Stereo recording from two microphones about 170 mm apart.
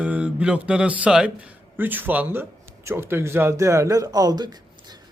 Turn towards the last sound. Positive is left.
turn(degrees=-25)  # may be behind; listen again after turning